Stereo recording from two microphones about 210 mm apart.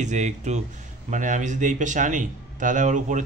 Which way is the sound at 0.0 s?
35° right (ahead or behind).